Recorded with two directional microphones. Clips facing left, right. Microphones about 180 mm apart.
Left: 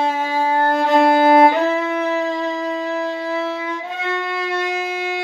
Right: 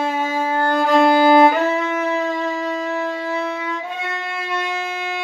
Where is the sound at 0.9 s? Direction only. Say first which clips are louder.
Even; 20° left (ahead or behind).